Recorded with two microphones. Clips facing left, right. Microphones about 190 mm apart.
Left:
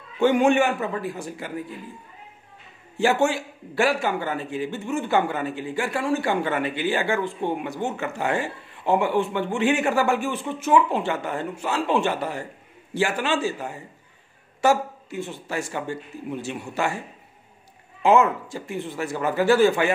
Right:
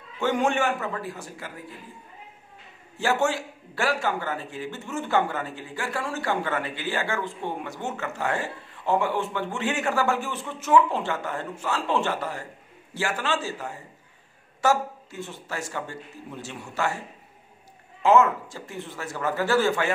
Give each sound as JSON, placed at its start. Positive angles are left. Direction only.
{"t": 0.2, "sound": "a man's voice", "side_deg": 15}
{"t": 3.0, "sound": "a man's voice", "side_deg": 15}
{"t": 18.0, "sound": "a man's voice", "side_deg": 15}